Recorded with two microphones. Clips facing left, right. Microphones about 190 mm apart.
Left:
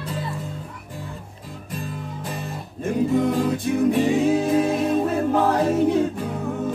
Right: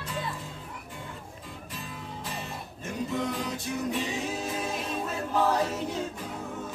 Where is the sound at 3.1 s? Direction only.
50° left (ahead or behind).